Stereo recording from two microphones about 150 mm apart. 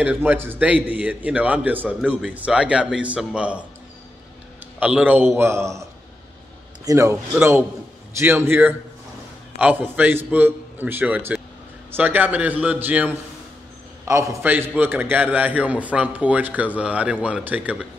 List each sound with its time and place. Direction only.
0.0 s a man's voice: 10° right (ahead or behind)
4.7 s a man's voice: 10° right (ahead or behind)
6.9 s a man's voice: 20° right (ahead or behind)